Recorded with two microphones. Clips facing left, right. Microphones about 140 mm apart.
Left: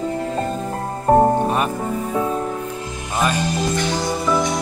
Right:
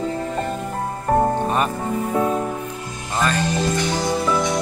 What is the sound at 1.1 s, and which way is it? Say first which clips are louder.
Music: left 5 dB; 30° left (ahead or behind).